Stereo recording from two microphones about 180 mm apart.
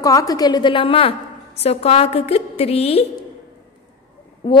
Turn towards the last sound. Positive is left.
turn(degrees=25)  # may be behind; listen again after turning